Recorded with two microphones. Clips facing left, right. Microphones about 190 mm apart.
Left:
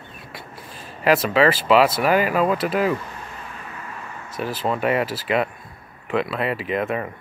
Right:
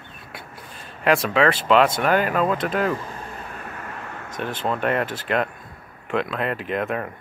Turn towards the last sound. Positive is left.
turn(degrees=0)  # may be behind; listen again after turning